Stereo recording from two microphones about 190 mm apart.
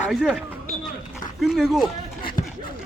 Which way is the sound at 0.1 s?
Centre (ahead or behind).